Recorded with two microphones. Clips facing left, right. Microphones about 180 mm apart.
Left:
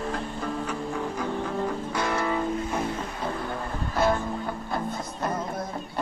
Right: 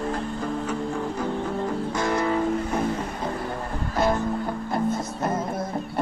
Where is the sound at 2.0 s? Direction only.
10° right (ahead or behind).